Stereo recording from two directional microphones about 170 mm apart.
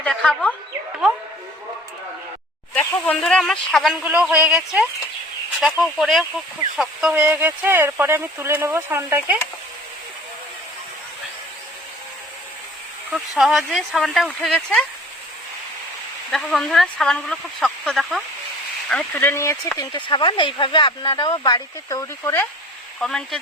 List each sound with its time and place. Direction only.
0.0 s speech: 5° left (ahead or behind)
2.7 s speech: 5° left (ahead or behind)
4.0 s speech: 5° right (ahead or behind)
7.1 s speech: 10° right (ahead or behind)
13.1 s speech: centre (ahead or behind)
16.3 s speech: centre (ahead or behind)
23.0 s speech: 5° left (ahead or behind)